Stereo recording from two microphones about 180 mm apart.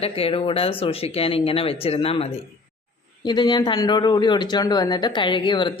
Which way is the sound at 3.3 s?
25° left (ahead or behind).